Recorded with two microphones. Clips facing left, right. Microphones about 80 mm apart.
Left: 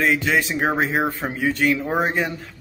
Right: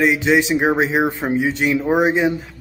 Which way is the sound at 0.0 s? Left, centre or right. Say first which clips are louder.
Right 4 dB; centre.